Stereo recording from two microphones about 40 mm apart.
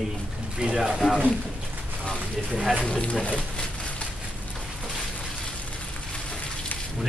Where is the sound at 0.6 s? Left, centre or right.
Right.